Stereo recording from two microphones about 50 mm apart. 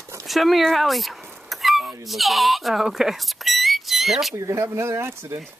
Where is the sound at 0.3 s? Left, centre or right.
Centre.